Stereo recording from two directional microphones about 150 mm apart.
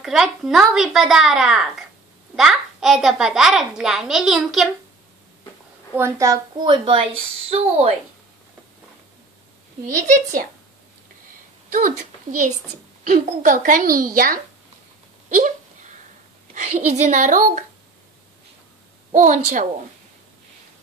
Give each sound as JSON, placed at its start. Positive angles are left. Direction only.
{"t": 0.0, "sound": "a child's voice", "side_deg": 0}
{"t": 5.9, "sound": "a woman's voice", "side_deg": -20}
{"t": 11.7, "sound": "a woman's voice", "side_deg": -60}
{"t": 15.2, "sound": "hiccup", "side_deg": -55}
{"t": 16.5, "sound": "a woman's voice", "side_deg": -50}
{"t": 19.1, "sound": "a woman's voice", "side_deg": -55}